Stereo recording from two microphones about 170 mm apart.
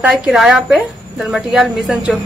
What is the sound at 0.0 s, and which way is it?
Speech, 5° right (ahead or behind).